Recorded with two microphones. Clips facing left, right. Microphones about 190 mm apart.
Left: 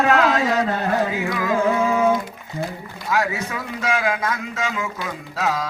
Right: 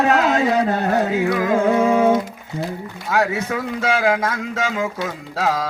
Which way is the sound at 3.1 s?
60° right (ahead or behind).